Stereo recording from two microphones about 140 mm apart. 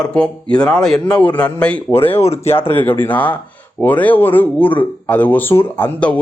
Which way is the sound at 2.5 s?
15° left (ahead or behind).